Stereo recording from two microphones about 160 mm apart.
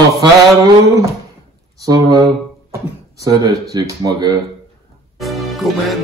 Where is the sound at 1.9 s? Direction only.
25° right (ahead or behind).